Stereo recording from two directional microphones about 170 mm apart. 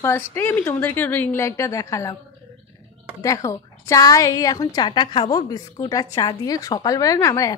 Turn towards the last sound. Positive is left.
turn(degrees=20)  # may be behind; listen again after turning